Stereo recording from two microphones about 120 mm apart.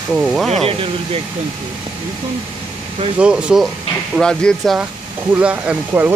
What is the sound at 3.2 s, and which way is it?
Speech, 10° right (ahead or behind).